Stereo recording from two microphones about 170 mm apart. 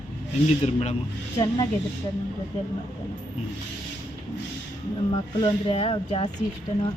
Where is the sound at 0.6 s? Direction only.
40° left (ahead or behind).